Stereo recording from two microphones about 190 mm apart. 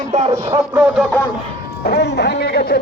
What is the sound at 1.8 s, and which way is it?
Speech, 60° left (ahead or behind).